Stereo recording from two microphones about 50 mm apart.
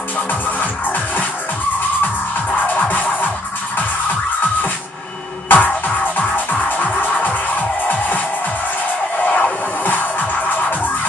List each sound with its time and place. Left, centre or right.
0.3 s music: left
2.5 s music: left
5.5 s music: left
9.2 s music: left